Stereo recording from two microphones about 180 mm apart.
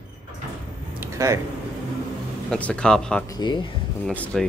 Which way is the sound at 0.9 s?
15° right (ahead or behind).